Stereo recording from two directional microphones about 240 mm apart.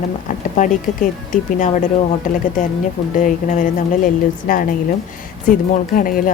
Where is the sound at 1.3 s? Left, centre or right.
Left.